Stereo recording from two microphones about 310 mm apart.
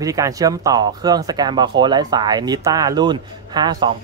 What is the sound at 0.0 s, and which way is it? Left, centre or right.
A man's voice, centre.